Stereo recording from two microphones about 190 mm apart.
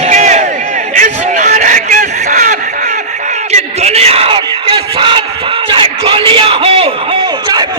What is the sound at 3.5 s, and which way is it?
Bellow, 35° right (ahead or behind).